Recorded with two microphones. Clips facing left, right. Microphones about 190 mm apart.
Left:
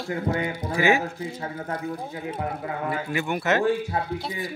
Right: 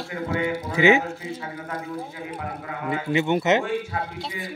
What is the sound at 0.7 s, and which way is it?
Speech, 20° right (ahead or behind).